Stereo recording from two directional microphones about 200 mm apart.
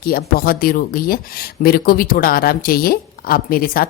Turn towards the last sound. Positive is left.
turn(degrees=45)  # may be behind; listen again after turning